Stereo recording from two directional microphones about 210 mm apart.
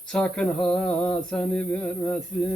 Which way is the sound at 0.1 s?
5° left (ahead or behind).